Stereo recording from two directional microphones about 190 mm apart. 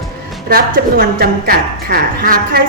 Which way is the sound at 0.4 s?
50° right (ahead or behind).